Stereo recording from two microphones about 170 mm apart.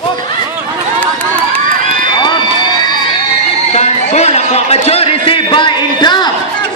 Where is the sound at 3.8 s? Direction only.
40° left (ahead or behind).